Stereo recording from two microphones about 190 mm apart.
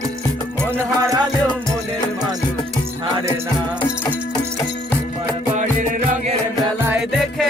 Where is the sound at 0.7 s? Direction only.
15° right (ahead or behind).